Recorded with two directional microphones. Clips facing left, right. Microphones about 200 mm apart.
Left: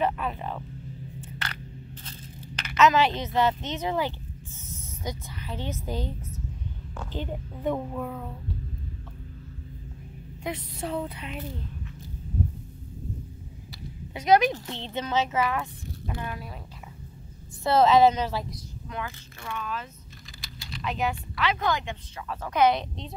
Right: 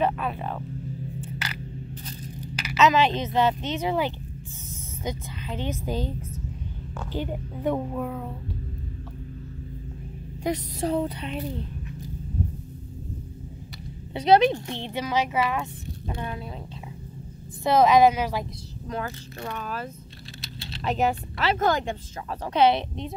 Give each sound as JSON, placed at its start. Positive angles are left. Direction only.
{"t": 0.0, "sound": "speech", "side_deg": -20}
{"t": 2.0, "sound": "a sound", "side_deg": -10}
{"t": 2.8, "sound": "speech", "side_deg": -20}
{"t": 7.2, "sound": "speech", "side_deg": -10}
{"t": 10.4, "sound": "speech", "side_deg": -40}
{"t": 14.1, "sound": "speech", "side_deg": -30}
{"t": 14.8, "sound": "speech", "side_deg": -15}
{"t": 17.6, "sound": "speech", "side_deg": -15}
{"t": 18.9, "sound": "speech", "side_deg": -40}